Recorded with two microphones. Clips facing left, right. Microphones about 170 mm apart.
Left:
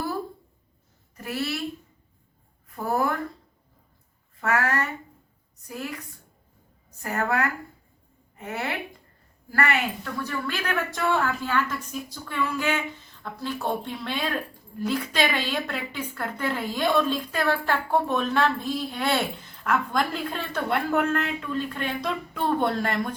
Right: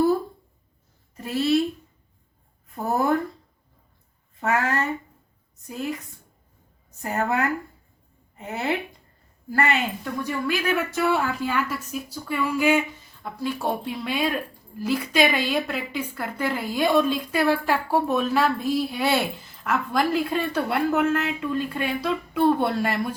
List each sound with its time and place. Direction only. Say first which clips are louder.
1.1 s a woman's voice: right 8 dB; 25° right (ahead or behind)
2.7 s speech: right 3 dB; 25° right (ahead or behind)
4.4 s speech: right 1 dB; 25° right (ahead or behind)
7.0 s a woman's voice: right 2 dB; 25° right (ahead or behind)